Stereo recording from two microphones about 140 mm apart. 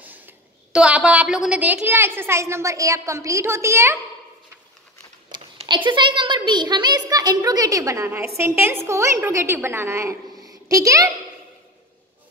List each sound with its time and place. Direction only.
0.7 s a woman's voice: 10° right (ahead or behind)
5.3 s a sound: 30° right (ahead or behind)
5.9 s a woman's voice: 35° right (ahead or behind)